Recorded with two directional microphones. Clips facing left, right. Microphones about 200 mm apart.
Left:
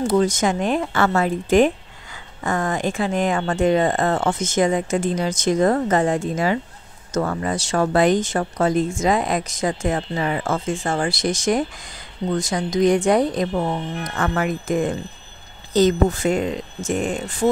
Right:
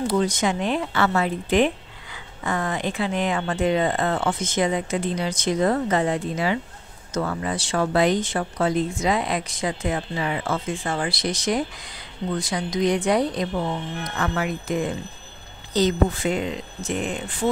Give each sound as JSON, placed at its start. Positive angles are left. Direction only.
{"t": 0.0, "sound": "speech", "side_deg": 45}